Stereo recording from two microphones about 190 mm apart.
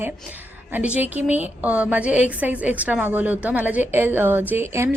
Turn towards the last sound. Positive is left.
turn(degrees=-15)  # may be behind; listen again after turning